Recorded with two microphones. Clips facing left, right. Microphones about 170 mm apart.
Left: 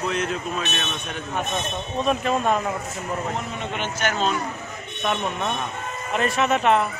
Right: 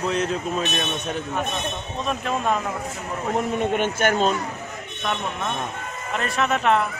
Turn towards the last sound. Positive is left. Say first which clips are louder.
# left 1 dB
turn(degrees=0)  # may be behind; listen again after turning